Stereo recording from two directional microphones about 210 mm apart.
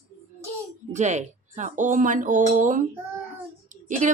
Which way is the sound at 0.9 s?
35° right (ahead or behind).